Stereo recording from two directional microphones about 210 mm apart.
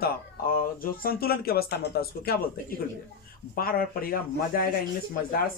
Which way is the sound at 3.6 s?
45° left (ahead or behind).